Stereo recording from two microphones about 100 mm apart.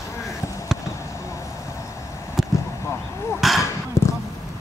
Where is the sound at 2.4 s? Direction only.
Centre (ahead or behind).